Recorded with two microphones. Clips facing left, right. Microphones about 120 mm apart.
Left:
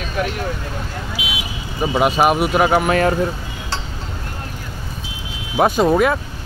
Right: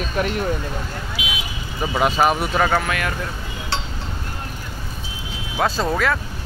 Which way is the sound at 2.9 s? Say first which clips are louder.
Left 9 dB; 35° left (ahead or behind).